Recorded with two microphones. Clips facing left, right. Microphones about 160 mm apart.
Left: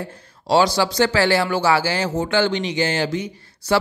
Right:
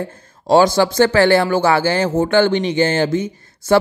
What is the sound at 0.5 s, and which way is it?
Speech, 50° right (ahead or behind).